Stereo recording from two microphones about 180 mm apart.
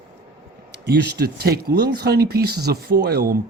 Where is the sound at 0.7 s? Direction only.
70° right (ahead or behind).